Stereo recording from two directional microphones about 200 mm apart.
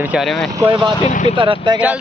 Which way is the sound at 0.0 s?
5° right (ahead or behind).